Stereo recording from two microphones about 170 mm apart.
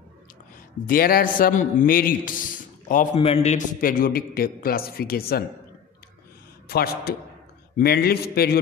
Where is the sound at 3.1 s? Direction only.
35° left (ahead or behind).